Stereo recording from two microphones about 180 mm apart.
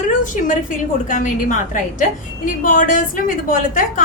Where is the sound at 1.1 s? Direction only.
45° left (ahead or behind).